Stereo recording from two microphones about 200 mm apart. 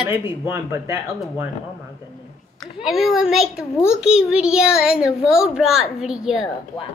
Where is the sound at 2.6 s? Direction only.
Centre (ahead or behind).